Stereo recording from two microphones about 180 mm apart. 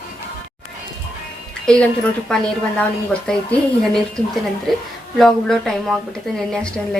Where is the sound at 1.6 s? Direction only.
5° left (ahead or behind).